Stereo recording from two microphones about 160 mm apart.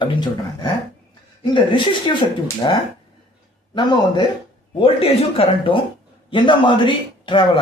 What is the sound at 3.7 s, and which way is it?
Speech, 30° left (ahead or behind).